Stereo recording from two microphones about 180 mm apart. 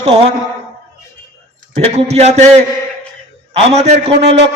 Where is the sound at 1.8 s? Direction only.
35° right (ahead or behind).